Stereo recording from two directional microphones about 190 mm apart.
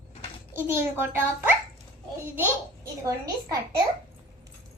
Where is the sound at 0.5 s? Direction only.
10° right (ahead or behind).